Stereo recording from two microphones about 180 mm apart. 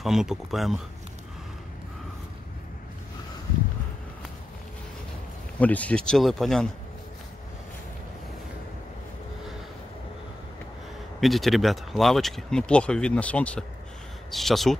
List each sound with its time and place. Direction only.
0.0 s speech: centre (ahead or behind)
5.6 s speech: 10° left (ahead or behind)
11.1 s speech: centre (ahead or behind)